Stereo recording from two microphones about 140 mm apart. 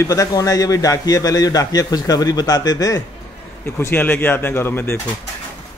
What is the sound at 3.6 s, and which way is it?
Speech, 15° left (ahead or behind).